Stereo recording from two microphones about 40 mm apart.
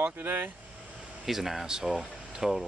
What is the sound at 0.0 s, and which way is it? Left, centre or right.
Speech, right.